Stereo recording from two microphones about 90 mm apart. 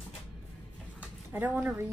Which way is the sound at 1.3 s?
20° right (ahead or behind).